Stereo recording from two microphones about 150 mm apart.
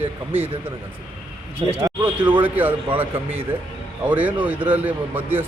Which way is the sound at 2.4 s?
10° right (ahead or behind).